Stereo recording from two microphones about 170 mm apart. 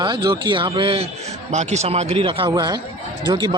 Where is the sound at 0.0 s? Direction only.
25° right (ahead or behind).